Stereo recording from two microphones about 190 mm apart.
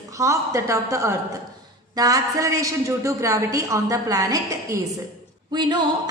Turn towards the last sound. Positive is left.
turn(degrees=-20)  # may be behind; listen again after turning